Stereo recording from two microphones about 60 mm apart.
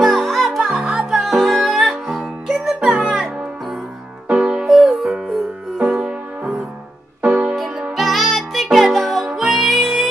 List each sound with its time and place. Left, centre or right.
0.0 s music: centre
1.2 s music: centre
4.3 s music: centre
4.6 s music: centre
5.8 s music: centre
7.9 s music: centre